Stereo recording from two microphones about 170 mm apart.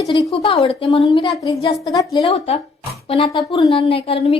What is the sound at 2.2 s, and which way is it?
Speech, 35° left (ahead or behind).